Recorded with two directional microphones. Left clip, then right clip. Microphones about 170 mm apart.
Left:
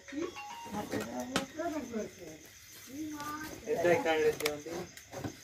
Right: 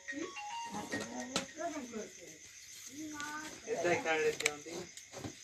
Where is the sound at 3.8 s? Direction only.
25° left (ahead or behind).